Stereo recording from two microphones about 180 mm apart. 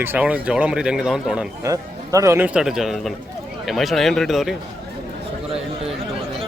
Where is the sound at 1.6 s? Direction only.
20° right (ahead or behind); by 4.5 s centre (ahead or behind).